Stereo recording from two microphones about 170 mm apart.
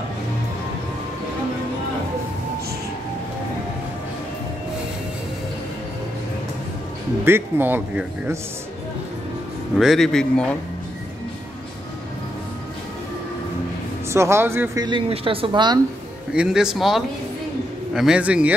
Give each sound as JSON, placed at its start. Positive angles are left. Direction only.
{"t": 7.2, "sound": "speech", "side_deg": -15}
{"t": 9.8, "sound": "a man's voice", "side_deg": 0}
{"t": 14.0, "sound": "speech", "side_deg": -15}
{"t": 14.9, "sound": "speech", "side_deg": -30}
{"t": 16.3, "sound": "a man's voice", "side_deg": -5}